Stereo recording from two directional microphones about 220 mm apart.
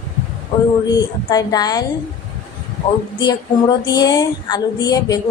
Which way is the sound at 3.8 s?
20° left (ahead or behind).